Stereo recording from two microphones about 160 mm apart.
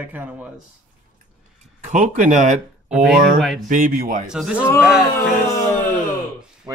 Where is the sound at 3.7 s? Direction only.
60° right (ahead or behind).